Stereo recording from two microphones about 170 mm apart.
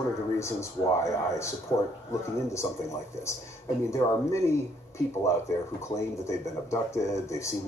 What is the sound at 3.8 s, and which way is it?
Speech, 15° left (ahead or behind).